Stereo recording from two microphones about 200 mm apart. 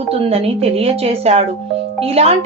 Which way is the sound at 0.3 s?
30° right (ahead or behind).